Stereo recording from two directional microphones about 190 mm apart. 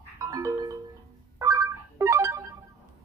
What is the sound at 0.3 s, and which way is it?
Music, 15° right (ahead or behind).